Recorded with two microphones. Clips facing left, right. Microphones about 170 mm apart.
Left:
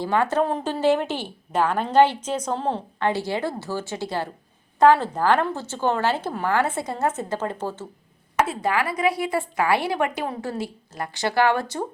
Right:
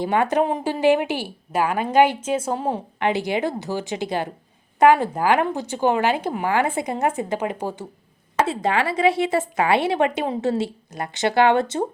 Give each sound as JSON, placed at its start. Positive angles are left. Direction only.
{"t": 0.0, "sound": "a woman's voice", "side_deg": -20}
{"t": 8.4, "sound": "a woman's voice", "side_deg": -25}